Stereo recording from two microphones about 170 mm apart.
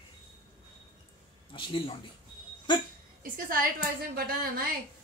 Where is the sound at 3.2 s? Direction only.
55° right (ahead or behind).